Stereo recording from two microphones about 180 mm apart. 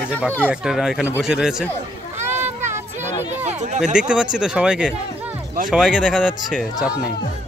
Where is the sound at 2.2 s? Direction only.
10° right (ahead or behind).